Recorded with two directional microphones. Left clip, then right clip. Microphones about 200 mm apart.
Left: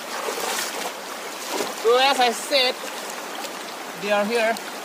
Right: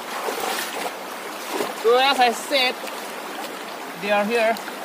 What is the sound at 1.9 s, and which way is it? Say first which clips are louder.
Speech: right 1 dB; centre (ahead or behind).